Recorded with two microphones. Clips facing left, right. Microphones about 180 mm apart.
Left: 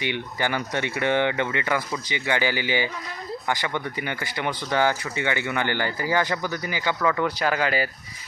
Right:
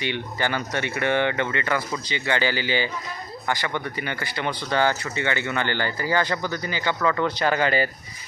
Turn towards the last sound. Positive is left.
turn(degrees=5)  # may be behind; listen again after turning